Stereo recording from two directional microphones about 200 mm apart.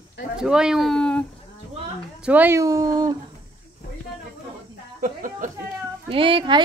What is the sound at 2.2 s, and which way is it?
Speech, 10° right (ahead or behind).